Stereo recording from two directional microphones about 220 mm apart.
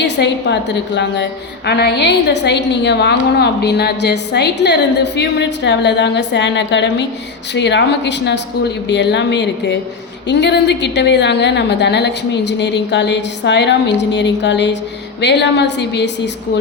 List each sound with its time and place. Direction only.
0.0 s a woman's voice: 50° left (ahead or behind)